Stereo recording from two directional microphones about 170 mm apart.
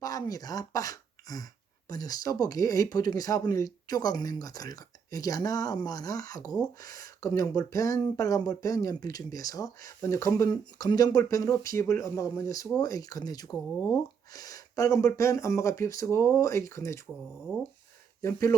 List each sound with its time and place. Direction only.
0.0 s speech: 20° left (ahead or behind)
18.2 s speech: 20° left (ahead or behind)